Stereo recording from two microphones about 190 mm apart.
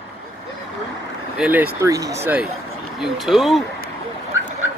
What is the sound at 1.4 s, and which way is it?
Speech, 10° right (ahead or behind).